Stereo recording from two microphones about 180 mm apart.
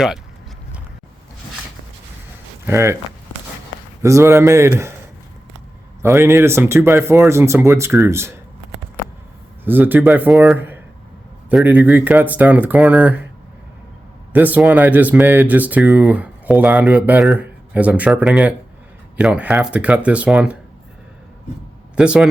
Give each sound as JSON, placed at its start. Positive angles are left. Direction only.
{"t": 2.6, "sound": "speech", "side_deg": -15}
{"t": 4.0, "sound": "speech", "side_deg": -15}
{"t": 6.0, "sound": "speech", "side_deg": -15}
{"t": 9.6, "sound": "speech", "side_deg": -10}
{"t": 14.3, "sound": "speech", "side_deg": -10}
{"t": 21.9, "sound": "speech", "side_deg": -5}